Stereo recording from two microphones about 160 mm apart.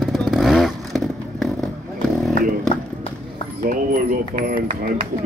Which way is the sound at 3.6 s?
60° right (ahead or behind).